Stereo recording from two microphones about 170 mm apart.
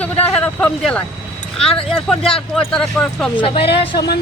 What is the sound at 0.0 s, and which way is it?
Vehicle, 10° left (ahead or behind).